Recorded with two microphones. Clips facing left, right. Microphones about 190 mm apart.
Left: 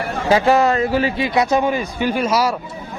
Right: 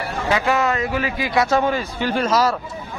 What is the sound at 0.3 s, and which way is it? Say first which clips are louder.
A man's voice: left 5 dB; 35° left (ahead or behind).